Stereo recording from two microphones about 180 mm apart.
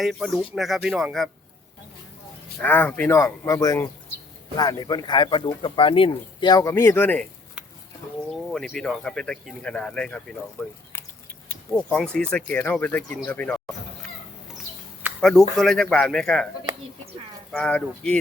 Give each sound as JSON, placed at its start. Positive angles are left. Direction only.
{"t": 0.0, "sound": "speech", "side_deg": 0}
{"t": 2.6, "sound": "speech", "side_deg": 10}
{"t": 8.3, "sound": "speech", "side_deg": 0}
{"t": 11.7, "sound": "speech", "side_deg": 5}
{"t": 15.2, "sound": "speech", "side_deg": 5}
{"t": 17.5, "sound": "speech", "side_deg": 5}